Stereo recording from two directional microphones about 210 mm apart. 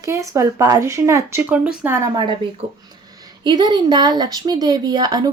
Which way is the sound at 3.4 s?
20° right (ahead or behind).